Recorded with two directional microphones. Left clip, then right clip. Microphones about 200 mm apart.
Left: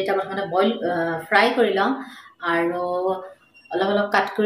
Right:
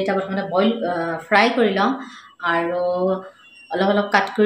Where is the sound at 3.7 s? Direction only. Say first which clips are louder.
Right 2 dB; 25° right (ahead or behind).